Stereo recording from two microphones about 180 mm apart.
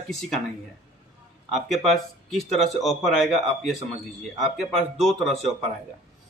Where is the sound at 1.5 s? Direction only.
Centre (ahead or behind).